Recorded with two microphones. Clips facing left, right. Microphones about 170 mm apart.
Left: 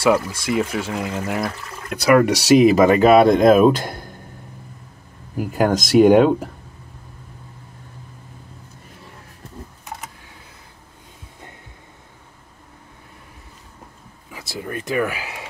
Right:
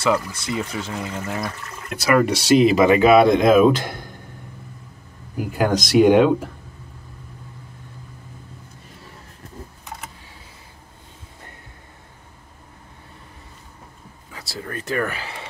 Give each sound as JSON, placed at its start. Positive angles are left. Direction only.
{"t": 0.0, "sound": "speech", "side_deg": 15}
{"t": 2.8, "sound": "speech", "side_deg": 45}
{"t": 5.5, "sound": "speech", "side_deg": 45}
{"t": 14.3, "sound": "speech", "side_deg": 10}